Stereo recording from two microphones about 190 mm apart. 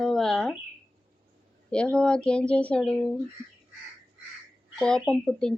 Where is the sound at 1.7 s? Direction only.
5° left (ahead or behind).